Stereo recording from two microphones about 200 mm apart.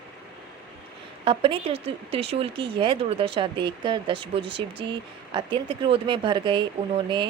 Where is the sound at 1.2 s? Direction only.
25° right (ahead or behind).